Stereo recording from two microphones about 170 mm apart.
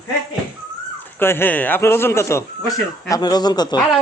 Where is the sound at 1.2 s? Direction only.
15° left (ahead or behind).